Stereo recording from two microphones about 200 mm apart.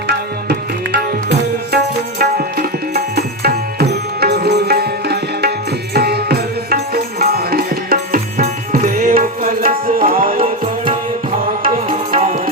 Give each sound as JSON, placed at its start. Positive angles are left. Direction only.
{"t": 0.1, "sound": "tabla", "side_deg": -50}
{"t": 11.7, "sound": "music", "side_deg": -30}